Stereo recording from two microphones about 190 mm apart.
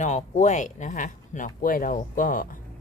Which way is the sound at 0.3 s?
40° left (ahead or behind).